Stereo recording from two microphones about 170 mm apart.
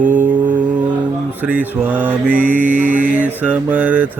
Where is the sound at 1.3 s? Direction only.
10° right (ahead or behind).